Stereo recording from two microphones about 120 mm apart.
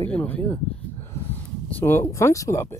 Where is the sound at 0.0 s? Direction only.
10° left (ahead or behind).